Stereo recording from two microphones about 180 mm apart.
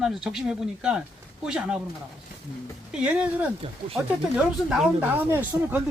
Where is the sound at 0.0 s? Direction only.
Centre (ahead or behind).